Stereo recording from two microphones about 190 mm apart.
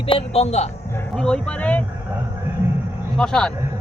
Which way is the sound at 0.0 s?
30° left (ahead or behind).